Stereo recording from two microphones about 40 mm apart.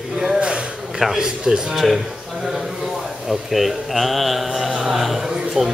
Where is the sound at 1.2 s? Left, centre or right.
Centre.